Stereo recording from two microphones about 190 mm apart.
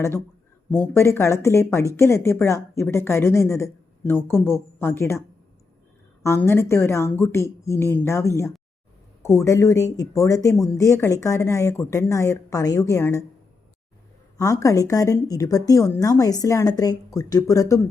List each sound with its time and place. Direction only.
0.7 s speech: 10° left (ahead or behind)
6.2 s speech: 15° left (ahead or behind)
14.3 s speech: 15° left (ahead or behind)